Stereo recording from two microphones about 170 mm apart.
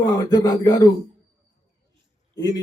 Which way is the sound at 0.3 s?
25° left (ahead or behind).